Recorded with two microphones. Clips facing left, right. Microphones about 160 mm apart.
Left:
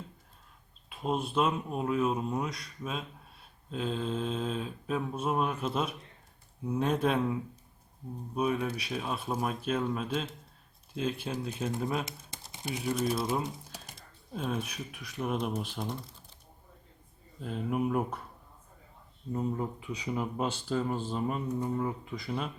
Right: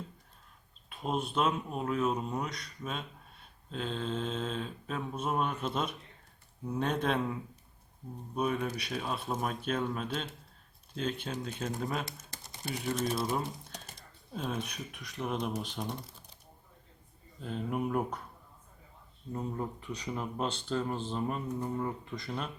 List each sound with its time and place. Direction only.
0.9 s speech: centre (ahead or behind)
8.4 s speech: 5° left (ahead or behind)
12.1 s typing: 25° left (ahead or behind)
12.7 s speech: 5° left (ahead or behind)
17.4 s speech: 5° left (ahead or behind)
19.3 s speech: 5° left (ahead or behind)